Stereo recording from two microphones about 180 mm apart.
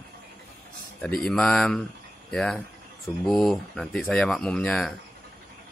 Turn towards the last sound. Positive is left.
turn(degrees=5)  # may be behind; listen again after turning